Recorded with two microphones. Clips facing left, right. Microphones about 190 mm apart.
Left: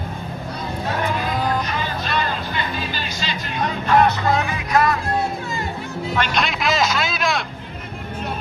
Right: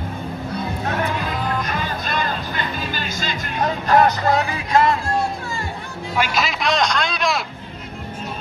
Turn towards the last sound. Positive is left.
turn(degrees=0)  # may be behind; listen again after turning